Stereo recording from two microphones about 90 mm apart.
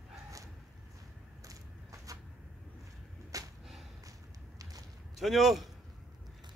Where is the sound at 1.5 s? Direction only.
40° right (ahead or behind).